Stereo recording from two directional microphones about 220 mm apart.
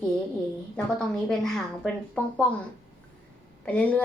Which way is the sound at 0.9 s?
Centre (ahead or behind).